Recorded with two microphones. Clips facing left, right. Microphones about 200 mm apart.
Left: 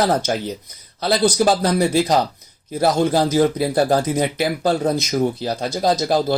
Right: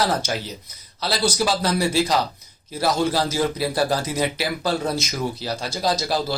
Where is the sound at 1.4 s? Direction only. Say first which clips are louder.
Left 5 dB; 50° left (ahead or behind).